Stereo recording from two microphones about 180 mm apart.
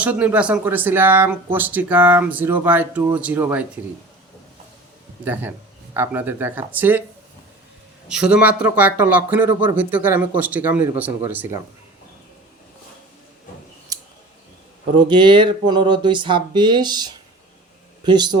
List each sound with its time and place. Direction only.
0.0 s speech: 10° right (ahead or behind)
5.2 s speech: 10° right (ahead or behind)
8.0 s speech: 5° right (ahead or behind)
13.9 s scissors: 20° right (ahead or behind)
14.9 s speech: 25° right (ahead or behind)